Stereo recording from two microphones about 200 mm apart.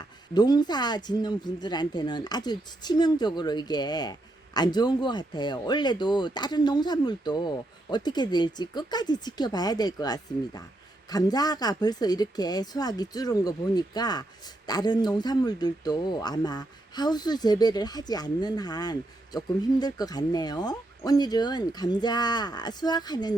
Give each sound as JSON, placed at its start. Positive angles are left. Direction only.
{"t": 0.0, "sound": "speech", "side_deg": 20}